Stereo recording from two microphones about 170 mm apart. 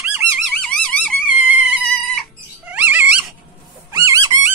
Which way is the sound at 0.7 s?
5° left (ahead or behind).